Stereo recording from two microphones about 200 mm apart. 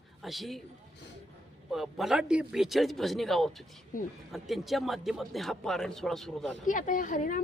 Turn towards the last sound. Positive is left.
turn(degrees=40)  # may be behind; listen again after turning